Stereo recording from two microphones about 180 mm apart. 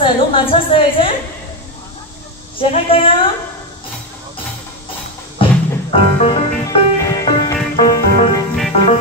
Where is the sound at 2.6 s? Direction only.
30° left (ahead or behind).